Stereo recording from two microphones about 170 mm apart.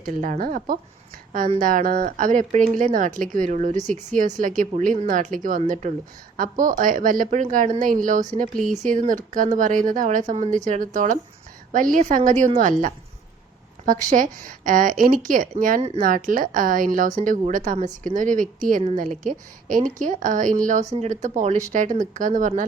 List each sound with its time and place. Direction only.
0.0 s speech: 50° right (ahead or behind)